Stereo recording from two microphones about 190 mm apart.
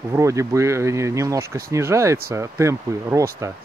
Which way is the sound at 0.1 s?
15° right (ahead or behind).